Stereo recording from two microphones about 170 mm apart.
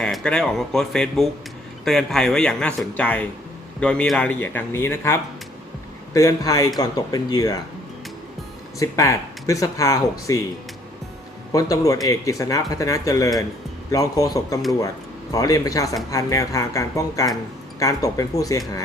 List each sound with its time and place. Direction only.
0.0 s speech: 5° left (ahead or behind); by 7.5 s 20° left (ahead or behind)
8.8 s speech: 20° left (ahead or behind)
11.5 s speech: 20° left (ahead or behind)